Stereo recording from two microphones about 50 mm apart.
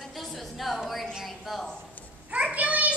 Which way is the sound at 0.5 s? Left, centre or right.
Centre.